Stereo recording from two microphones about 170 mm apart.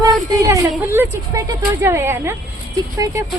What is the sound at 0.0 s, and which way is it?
Speech, 15° right (ahead or behind).